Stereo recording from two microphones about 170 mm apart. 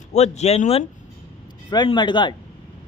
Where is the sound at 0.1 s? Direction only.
40° left (ahead or behind).